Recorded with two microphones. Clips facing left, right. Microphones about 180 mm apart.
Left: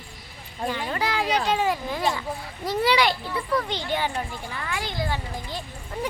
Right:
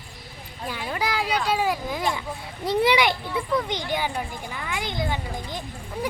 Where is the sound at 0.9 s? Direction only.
10° right (ahead or behind).